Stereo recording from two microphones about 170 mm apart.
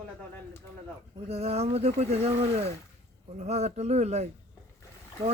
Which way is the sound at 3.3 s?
40° right (ahead or behind).